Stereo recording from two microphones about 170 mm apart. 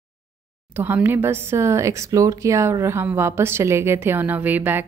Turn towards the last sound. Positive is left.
turn(degrees=-10)  # may be behind; listen again after turning